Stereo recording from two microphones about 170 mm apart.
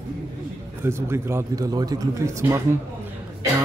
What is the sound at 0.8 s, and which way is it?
Speech, 15° right (ahead or behind).